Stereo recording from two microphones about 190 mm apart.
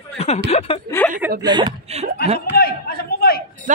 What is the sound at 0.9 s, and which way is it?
Speech, 10° left (ahead or behind).